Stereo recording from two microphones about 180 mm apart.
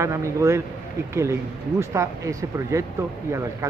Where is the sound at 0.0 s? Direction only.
15° right (ahead or behind).